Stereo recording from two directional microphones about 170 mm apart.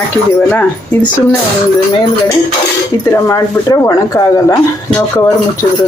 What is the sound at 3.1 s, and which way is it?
Speech, 20° left (ahead or behind).